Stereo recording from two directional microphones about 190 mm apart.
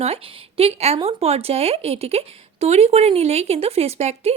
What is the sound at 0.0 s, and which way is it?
A woman's voice, 30° right (ahead or behind).